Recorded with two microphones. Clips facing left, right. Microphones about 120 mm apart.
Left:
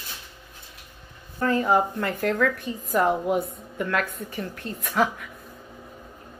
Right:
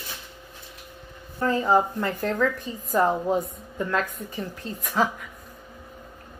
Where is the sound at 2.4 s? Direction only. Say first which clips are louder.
Left 1 dB; centre (ahead or behind).